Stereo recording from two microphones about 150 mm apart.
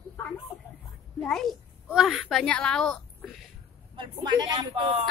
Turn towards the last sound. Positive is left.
turn(degrees=-30)  # may be behind; listen again after turning